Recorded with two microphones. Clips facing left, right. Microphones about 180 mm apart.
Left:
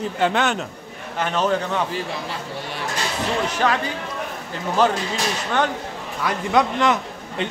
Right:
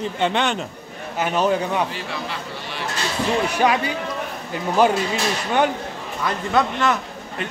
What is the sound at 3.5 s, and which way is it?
Speech, 10° right (ahead or behind).